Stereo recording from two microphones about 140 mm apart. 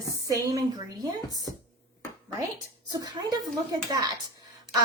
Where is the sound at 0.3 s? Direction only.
25° right (ahead or behind).